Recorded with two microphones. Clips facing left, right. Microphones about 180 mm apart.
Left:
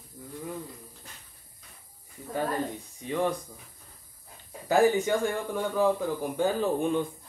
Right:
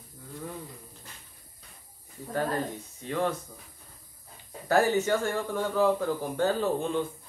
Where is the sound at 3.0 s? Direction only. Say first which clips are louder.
Left 1 dB; 15° left (ahead or behind).